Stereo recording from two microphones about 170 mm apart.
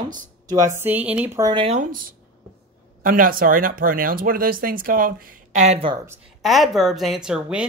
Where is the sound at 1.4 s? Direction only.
25° right (ahead or behind).